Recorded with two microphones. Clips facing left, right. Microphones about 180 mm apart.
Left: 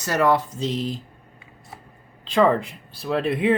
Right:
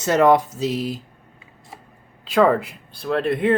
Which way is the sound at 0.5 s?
5° right (ahead or behind).